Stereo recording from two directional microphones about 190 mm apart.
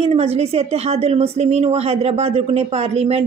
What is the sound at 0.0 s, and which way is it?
A woman's voice, 30° right (ahead or behind).